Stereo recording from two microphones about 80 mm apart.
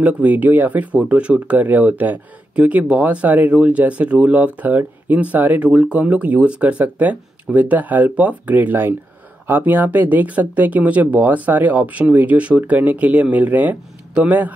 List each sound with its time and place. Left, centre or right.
0.0 s speech: centre